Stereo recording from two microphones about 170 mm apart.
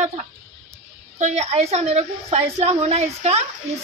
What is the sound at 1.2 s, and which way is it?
Speech, 40° right (ahead or behind).